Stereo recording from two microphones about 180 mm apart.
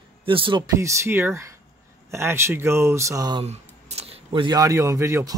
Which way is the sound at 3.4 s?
35° right (ahead or behind).